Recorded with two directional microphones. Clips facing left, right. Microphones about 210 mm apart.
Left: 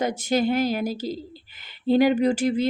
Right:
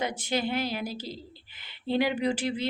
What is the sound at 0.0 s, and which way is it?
A woman's voice, 45° left (ahead or behind).